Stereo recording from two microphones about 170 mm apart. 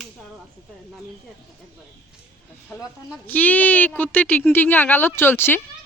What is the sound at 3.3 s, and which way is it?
Speech, 10° left (ahead or behind).